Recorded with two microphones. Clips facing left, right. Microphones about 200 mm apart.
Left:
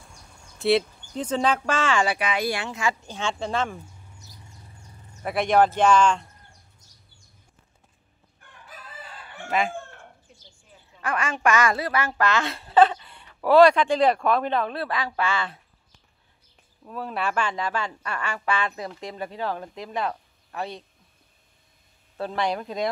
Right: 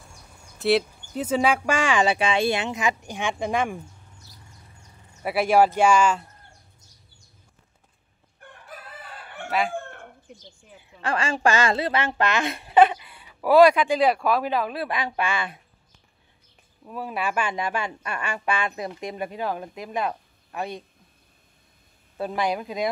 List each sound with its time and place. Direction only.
0.6 s a woman's voice: centre (ahead or behind)
5.2 s a woman's voice: 5° right (ahead or behind)
9.5 s chicken: centre (ahead or behind)
11.0 s a woman's voice: 30° right (ahead or behind)
16.8 s a woman's voice: 10° right (ahead or behind)
22.1 s a woman's voice: 10° right (ahead or behind)